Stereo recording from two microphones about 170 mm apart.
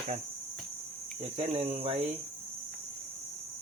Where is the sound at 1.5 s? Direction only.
35° right (ahead or behind).